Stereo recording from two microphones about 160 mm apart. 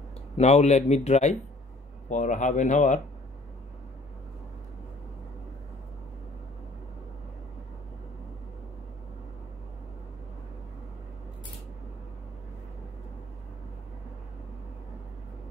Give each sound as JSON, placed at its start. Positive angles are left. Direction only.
{"t": 0.4, "sound": "speech", "side_deg": 45}